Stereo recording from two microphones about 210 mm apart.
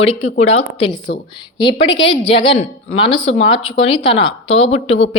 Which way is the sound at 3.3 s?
25° left (ahead or behind).